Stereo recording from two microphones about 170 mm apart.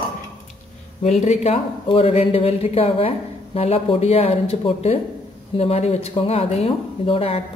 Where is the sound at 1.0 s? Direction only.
40° left (ahead or behind).